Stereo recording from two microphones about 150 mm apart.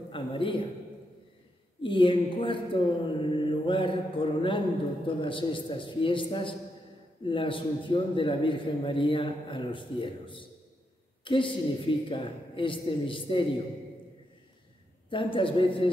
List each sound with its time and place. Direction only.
0.1 s a man's voice: 35° left (ahead or behind)
1.8 s a man's voice: 35° left (ahead or behind)
15.0 s a man's voice: 35° left (ahead or behind)